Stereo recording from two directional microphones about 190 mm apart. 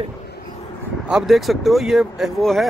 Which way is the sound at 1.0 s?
5° right (ahead or behind).